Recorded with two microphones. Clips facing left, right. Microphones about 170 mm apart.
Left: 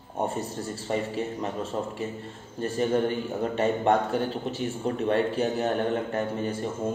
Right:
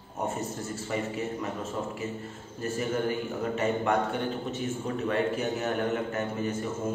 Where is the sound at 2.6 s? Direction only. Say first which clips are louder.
Left 5 dB; 30° left (ahead or behind).